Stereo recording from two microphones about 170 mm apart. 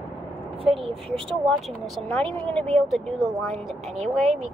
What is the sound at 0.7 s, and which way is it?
Speech, 35° right (ahead or behind).